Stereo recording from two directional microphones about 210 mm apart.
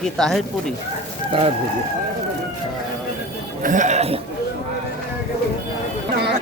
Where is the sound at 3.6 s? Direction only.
35° right (ahead or behind).